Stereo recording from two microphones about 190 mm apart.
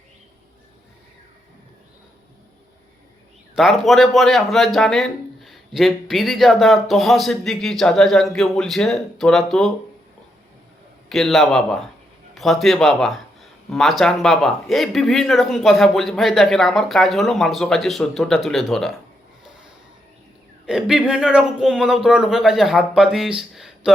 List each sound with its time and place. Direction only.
3.5 s a man's voice: centre (ahead or behind)
11.1 s a man's voice: centre (ahead or behind)
20.7 s a man's voice: centre (ahead or behind)